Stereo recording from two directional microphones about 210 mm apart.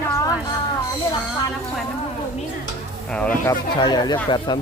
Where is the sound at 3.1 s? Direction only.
5° left (ahead or behind).